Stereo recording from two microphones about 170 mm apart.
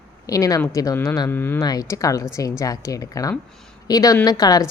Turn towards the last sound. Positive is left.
turn(degrees=20)  # may be behind; listen again after turning